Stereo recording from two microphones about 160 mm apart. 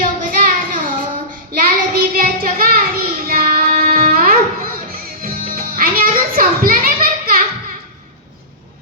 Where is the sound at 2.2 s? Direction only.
60° right (ahead or behind).